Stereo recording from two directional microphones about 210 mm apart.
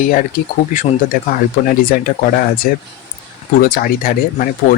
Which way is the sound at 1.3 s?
40° left (ahead or behind).